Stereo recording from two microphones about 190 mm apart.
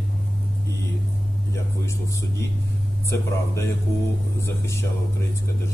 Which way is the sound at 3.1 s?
15° left (ahead or behind).